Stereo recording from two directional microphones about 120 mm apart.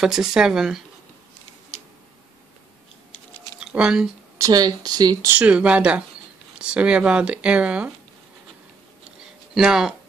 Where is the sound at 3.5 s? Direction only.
5° right (ahead or behind).